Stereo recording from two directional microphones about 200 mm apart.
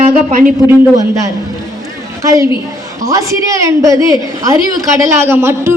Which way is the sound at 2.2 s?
15° right (ahead or behind).